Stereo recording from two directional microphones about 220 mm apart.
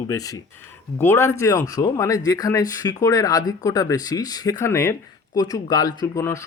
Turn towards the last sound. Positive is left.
turn(degrees=15)  # may be behind; listen again after turning